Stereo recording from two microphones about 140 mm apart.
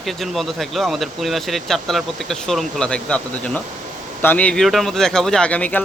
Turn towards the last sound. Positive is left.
turn(degrees=10)  # may be behind; listen again after turning